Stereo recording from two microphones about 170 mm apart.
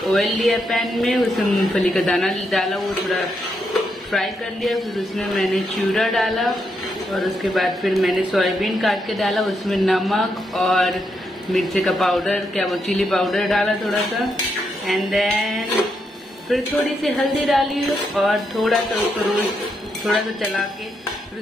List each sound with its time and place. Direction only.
0.0 s speech: centre (ahead or behind)